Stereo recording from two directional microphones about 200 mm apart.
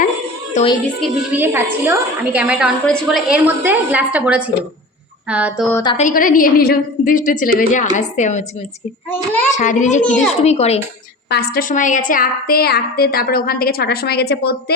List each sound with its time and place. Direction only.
1.0 s a woman's voice: 10° right (ahead or behind)
5.7 s a woman's voice: 20° left (ahead or behind)
6.0 s a woman's voice: 40° left (ahead or behind)
9.5 s a woman's voice: 40° left (ahead or behind)
11.3 s a woman's voice: 50° left (ahead or behind)